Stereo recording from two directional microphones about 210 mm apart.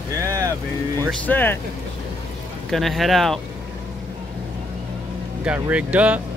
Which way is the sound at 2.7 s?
Centre (ahead or behind).